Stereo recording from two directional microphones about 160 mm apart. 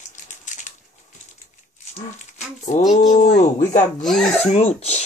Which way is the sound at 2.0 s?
45° left (ahead or behind).